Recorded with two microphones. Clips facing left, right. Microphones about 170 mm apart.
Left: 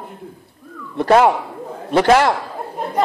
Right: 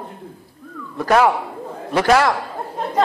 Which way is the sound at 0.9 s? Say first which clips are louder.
Left 3 dB; 30° left (ahead or behind).